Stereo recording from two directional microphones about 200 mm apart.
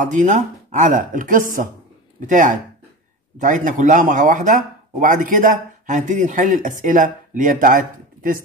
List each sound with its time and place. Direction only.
0.0 s speech: 40° right (ahead or behind)